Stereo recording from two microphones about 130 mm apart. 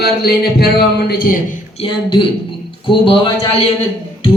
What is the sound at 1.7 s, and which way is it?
A man's voice, 40° left (ahead or behind).